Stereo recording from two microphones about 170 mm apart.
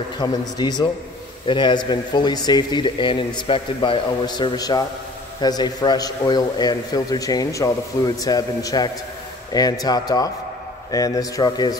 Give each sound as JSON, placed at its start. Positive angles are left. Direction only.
{"t": 0.2, "sound": "a man's voice", "side_deg": 25}